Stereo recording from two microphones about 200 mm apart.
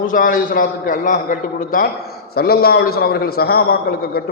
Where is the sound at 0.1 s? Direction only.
45° left (ahead or behind).